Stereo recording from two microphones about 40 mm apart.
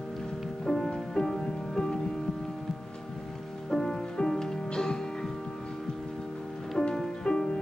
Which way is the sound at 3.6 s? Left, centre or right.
Centre.